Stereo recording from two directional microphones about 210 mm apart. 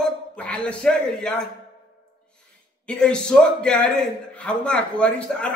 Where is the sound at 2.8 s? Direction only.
5° left (ahead or behind).